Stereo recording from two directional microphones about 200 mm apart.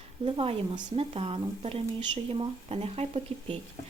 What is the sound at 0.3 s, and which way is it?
Speech, 30° right (ahead or behind).